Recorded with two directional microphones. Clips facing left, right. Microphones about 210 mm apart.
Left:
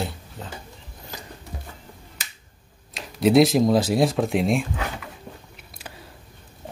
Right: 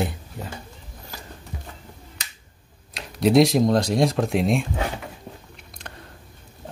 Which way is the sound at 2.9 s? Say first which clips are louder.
Even; centre (ahead or behind).